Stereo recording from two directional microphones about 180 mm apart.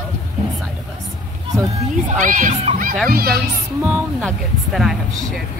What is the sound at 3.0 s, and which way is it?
Speech, 55° right (ahead or behind).